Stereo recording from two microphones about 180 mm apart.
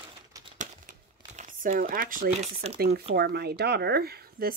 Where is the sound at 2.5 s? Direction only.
35° right (ahead or behind).